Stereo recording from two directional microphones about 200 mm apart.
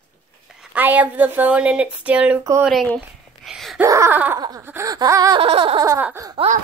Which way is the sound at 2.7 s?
Centre (ahead or behind).